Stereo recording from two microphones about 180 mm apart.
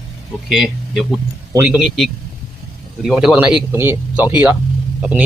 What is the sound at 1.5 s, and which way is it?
Speech, 15° right (ahead or behind).